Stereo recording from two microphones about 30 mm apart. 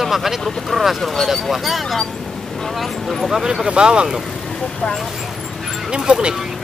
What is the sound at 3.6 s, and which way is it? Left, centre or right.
Speech, right.